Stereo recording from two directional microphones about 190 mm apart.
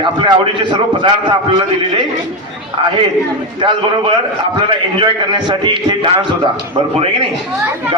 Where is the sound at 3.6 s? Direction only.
25° right (ahead or behind).